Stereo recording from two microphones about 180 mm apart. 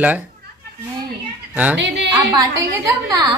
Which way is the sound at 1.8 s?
75° right (ahead or behind).